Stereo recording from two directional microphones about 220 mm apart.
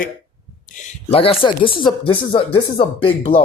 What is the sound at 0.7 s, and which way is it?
Speech, 35° left (ahead or behind).